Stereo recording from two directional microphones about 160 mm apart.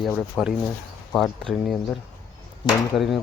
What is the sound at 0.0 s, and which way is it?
Speech, centre (ahead or behind).